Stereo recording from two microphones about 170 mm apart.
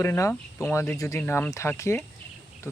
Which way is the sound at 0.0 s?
15° left (ahead or behind).